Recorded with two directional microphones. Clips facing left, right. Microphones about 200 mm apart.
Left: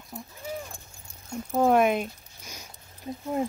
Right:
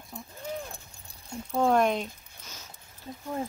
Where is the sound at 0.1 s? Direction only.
5° left (ahead or behind).